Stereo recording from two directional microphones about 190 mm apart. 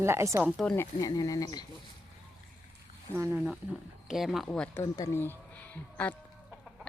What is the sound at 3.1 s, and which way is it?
Speech, 10° right (ahead or behind).